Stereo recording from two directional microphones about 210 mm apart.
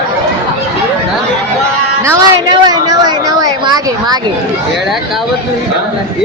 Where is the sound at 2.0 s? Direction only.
15° right (ahead or behind).